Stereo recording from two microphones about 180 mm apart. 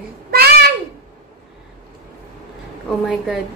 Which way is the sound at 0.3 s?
60° right (ahead or behind).